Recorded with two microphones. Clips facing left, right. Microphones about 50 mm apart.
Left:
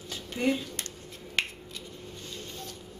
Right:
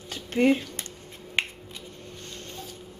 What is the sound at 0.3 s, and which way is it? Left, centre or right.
Speech, right.